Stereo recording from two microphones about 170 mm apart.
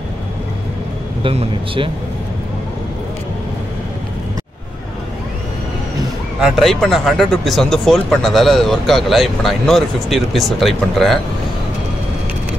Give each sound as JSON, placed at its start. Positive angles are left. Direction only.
{"t": 1.2, "sound": "speech", "side_deg": -35}
{"t": 6.4, "sound": "speech", "side_deg": 0}